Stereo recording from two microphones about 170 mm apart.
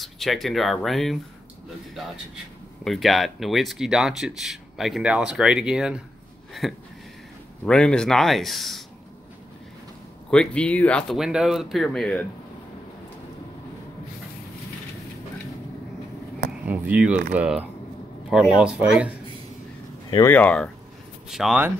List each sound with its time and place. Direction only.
0.0 s speech: centre (ahead or behind)
2.8 s speech: centre (ahead or behind)
7.6 s speech: 5° left (ahead or behind)
10.3 s speech: 5° left (ahead or behind)
16.6 s a sound: 10° right (ahead or behind)
17.3 s speech: 10° right (ahead or behind)
20.1 s speech: 20° left (ahead or behind)
20.3 s speech: 5° left (ahead or behind)